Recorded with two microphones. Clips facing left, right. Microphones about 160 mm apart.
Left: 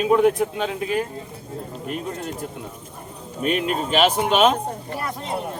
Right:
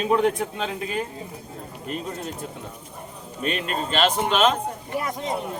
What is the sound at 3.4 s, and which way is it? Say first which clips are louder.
Speech: left 4 dB; 5° left (ahead or behind).